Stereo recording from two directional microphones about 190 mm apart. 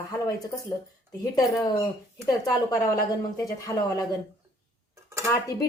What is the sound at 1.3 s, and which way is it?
A woman's voice, 20° left (ahead or behind).